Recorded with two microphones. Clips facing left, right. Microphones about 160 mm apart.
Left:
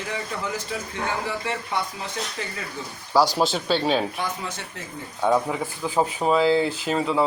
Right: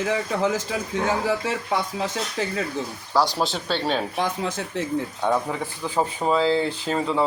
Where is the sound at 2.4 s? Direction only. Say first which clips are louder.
Right 6 dB; 90° right.